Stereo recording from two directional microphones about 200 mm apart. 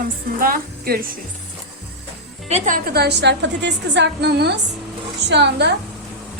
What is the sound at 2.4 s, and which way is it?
A woman's voice, 35° right (ahead or behind).